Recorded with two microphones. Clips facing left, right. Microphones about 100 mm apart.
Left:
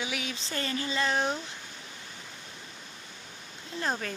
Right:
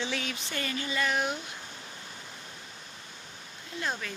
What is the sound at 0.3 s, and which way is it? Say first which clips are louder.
Speech: left 1 dB; 30° left (ahead or behind).